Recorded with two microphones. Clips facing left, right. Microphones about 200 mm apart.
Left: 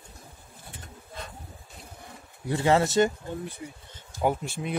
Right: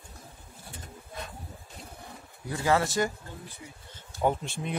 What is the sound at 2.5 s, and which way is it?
Speech, 25° left (ahead or behind).